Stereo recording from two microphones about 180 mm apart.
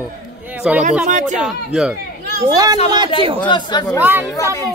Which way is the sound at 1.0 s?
45° right (ahead or behind).